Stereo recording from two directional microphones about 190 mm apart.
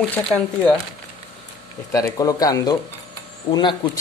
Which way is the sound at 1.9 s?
20° left (ahead or behind).